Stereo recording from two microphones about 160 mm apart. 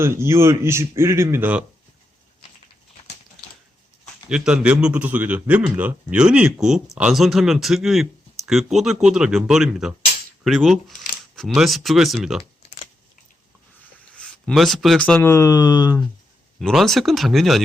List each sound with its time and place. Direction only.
0.0 s speech: 15° right (ahead or behind)
4.3 s speech: 5° right (ahead or behind)
14.1 s speech: 5° left (ahead or behind); by 16.0 s 25° left (ahead or behind)
16.6 s speech: centre (ahead or behind)